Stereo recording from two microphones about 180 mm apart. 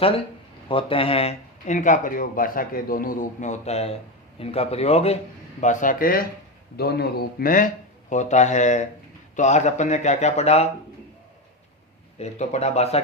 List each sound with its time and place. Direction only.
0.7 s speech: 30° left (ahead or behind); by 6.2 s 50° left (ahead or behind)
6.7 s speech: 60° left (ahead or behind); by 10.7 s 35° left (ahead or behind)
12.2 s speech: 35° left (ahead or behind)